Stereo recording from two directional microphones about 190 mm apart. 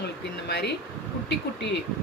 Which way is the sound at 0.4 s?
60° left (ahead or behind).